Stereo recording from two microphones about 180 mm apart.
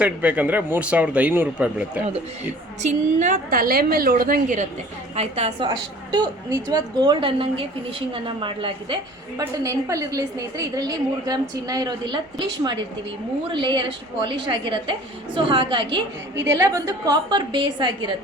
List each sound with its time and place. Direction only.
0.0 s speech: 5° right (ahead or behind)
2.8 s a woman's voice: 40° right (ahead or behind)
5.1 s a woman's voice: 35° right (ahead or behind)
5.6 s a woman's voice: 25° right (ahead or behind)
9.4 s a woman's voice: 15° right (ahead or behind)